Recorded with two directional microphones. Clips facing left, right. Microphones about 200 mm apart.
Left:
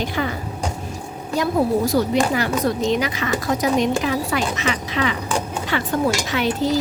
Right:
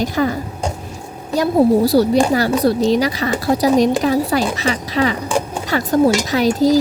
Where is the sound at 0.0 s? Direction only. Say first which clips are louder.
Right 6 dB; 40° right (ahead or behind).